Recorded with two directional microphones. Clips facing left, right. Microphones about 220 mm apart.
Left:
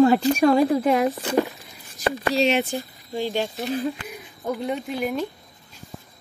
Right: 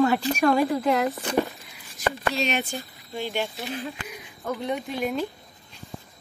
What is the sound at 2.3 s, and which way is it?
Speech, 30° left (ahead or behind).